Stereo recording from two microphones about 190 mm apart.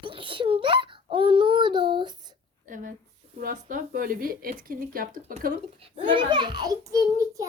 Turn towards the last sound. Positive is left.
turn(degrees=-15)  # may be behind; listen again after turning